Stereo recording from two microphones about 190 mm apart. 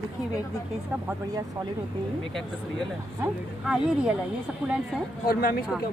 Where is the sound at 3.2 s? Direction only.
5° right (ahead or behind).